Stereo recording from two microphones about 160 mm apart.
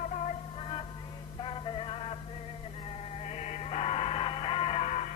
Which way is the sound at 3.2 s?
45° left (ahead or behind).